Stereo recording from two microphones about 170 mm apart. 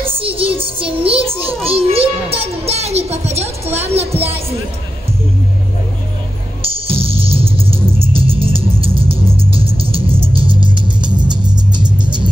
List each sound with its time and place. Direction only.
0.0 s music: 30° right (ahead or behind)
6.9 s music: 35° right (ahead or behind)